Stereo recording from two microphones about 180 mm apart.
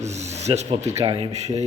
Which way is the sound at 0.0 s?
40° right (ahead or behind).